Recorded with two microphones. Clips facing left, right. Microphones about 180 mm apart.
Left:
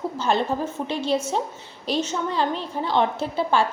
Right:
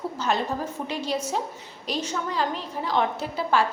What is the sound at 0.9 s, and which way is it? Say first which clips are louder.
A woman's voice: left 5 dB; 25° left (ahead or behind).